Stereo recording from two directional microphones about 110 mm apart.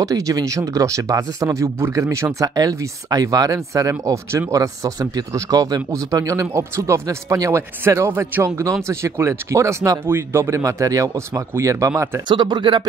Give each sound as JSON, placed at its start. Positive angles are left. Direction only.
{"t": 0.0, "sound": "speech", "side_deg": -30}
{"t": 12.3, "sound": "speech", "side_deg": -40}